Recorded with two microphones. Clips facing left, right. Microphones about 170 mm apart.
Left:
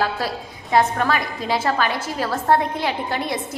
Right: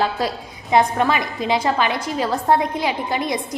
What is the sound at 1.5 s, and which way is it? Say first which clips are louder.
A woman's voice: right 1 dB; 15° right (ahead or behind).